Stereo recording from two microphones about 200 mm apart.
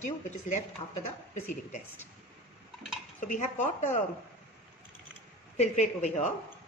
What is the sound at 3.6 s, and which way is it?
Speech, 40° left (ahead or behind).